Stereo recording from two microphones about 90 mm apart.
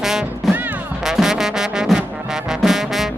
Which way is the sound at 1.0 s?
5° right (ahead or behind).